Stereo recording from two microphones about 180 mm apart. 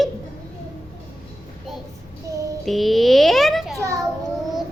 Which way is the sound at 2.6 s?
Centre (ahead or behind).